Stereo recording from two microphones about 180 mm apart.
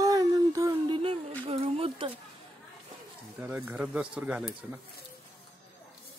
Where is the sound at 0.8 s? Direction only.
30° right (ahead or behind).